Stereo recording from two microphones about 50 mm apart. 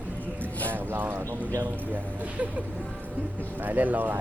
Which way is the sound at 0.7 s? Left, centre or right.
Right.